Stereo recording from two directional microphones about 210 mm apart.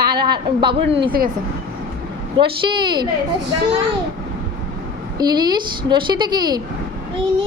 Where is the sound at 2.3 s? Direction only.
25° right (ahead or behind).